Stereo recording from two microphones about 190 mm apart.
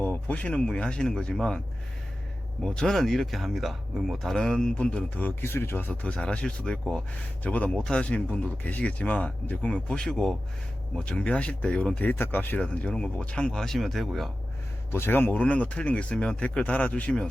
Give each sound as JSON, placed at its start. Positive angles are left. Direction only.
{"t": 0.0, "sound": "speech", "side_deg": 10}
{"t": 2.6, "sound": "speech", "side_deg": 5}
{"t": 14.8, "sound": "speech", "side_deg": 10}